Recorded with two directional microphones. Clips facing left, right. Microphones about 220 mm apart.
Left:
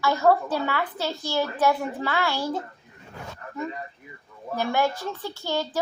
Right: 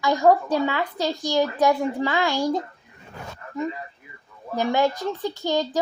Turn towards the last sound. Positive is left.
turn(degrees=-15)  # may be behind; listen again after turning